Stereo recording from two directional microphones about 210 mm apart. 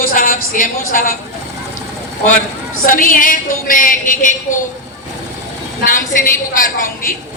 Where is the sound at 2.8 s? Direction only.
40° left (ahead or behind).